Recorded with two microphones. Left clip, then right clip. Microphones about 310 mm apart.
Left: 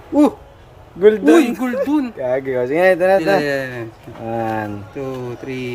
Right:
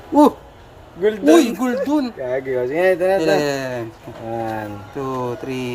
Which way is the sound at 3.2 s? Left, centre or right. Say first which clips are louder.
Left 1 dB; centre.